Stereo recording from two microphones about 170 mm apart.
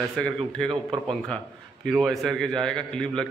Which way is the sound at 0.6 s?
30° right (ahead or behind).